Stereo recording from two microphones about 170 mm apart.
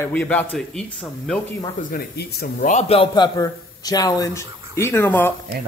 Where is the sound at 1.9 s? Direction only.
70° left (ahead or behind).